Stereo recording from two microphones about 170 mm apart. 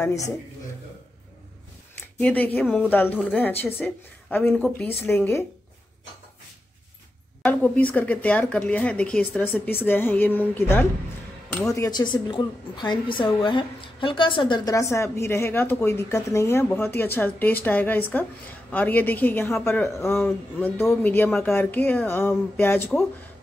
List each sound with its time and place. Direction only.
2.1 s a woman's voice: 10° left (ahead or behind)
2.6 s speech: 5° right (ahead or behind)
2.9 s a woman's voice: 10° left (ahead or behind)
7.4 s a woman's voice: 10° left (ahead or behind)
11.7 s a woman's voice: 20° left (ahead or behind)